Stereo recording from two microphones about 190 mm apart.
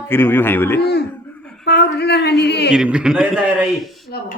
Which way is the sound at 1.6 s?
60° left (ahead or behind).